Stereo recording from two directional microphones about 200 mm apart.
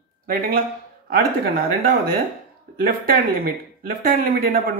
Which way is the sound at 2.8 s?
45° right (ahead or behind).